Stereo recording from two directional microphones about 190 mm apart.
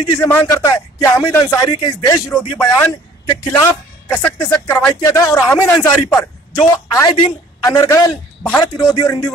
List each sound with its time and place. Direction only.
0.2 s speech: 10° left (ahead or behind)